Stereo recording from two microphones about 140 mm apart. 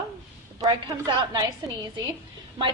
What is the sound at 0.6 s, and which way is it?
A woman's voice, 30° right (ahead or behind).